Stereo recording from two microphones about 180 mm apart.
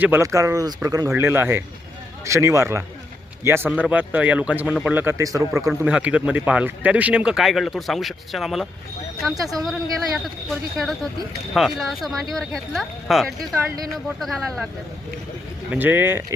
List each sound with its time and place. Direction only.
0.0 s speech: 15° right (ahead or behind)
9.3 s speech: 20° right (ahead or behind)
10.5 s speech: centre (ahead or behind)
15.7 s speech: 10° right (ahead or behind)